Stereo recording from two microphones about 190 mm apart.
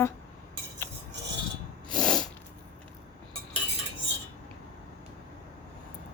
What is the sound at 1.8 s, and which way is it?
Sneeze, 5° left (ahead or behind).